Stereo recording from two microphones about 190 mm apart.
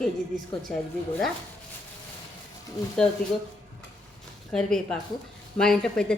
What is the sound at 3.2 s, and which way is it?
Speech, 45° left (ahead or behind).